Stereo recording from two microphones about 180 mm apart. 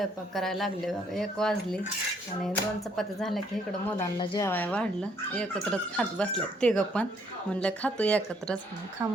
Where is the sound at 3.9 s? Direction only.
20° left (ahead or behind).